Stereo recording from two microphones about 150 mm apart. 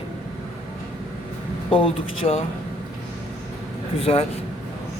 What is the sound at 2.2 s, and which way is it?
Speech, 35° left (ahead or behind).